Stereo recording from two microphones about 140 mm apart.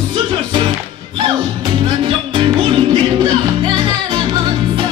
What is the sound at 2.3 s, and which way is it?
Music, 40° right (ahead or behind).